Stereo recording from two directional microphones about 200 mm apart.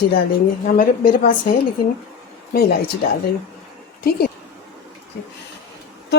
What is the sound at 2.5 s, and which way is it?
Speech, 50° left (ahead or behind).